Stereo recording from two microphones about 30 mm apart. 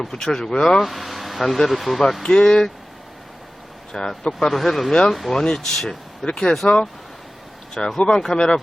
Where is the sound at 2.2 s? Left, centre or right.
Left.